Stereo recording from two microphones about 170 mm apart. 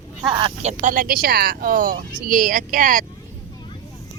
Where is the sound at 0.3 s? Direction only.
35° right (ahead or behind).